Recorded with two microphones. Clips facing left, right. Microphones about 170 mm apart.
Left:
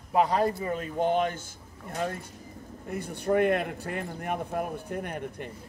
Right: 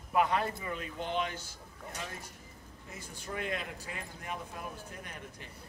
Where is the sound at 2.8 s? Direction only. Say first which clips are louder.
Left 14 dB; 60° left (ahead or behind).